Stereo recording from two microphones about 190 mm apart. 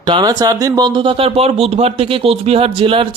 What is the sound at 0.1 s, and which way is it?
Speech, 20° right (ahead or behind).